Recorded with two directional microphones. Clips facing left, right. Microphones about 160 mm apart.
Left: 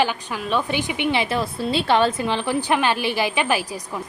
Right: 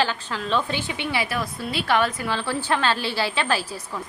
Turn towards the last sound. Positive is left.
turn(degrees=15)  # may be behind; listen again after turning